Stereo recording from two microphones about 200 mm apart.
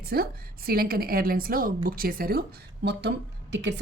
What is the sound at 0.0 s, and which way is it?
A woman's voice, 50° right (ahead or behind).